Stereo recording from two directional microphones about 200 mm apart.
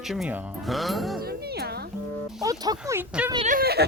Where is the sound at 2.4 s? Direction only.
20° right (ahead or behind).